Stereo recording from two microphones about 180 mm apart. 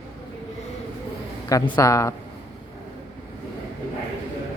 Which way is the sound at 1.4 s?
20° left (ahead or behind).